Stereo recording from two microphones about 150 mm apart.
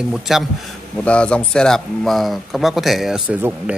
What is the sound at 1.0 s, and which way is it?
Speech, 5° left (ahead or behind).